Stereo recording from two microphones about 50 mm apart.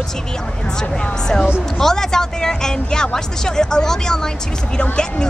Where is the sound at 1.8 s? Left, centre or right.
Centre.